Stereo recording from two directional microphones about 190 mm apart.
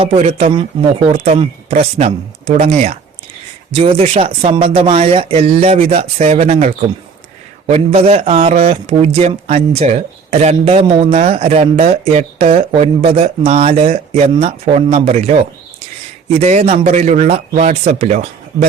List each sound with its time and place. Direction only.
0.0 s a man's voice: 35° right (ahead or behind)